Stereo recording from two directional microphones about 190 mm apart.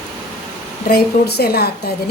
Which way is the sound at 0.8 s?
55° left (ahead or behind).